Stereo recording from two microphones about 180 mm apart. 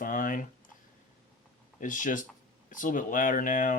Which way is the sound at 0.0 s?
50° left (ahead or behind).